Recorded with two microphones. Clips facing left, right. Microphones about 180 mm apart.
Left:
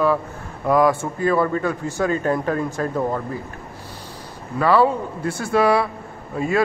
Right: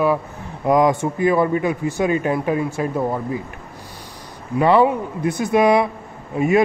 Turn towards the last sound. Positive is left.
turn(degrees=-20)  # may be behind; listen again after turning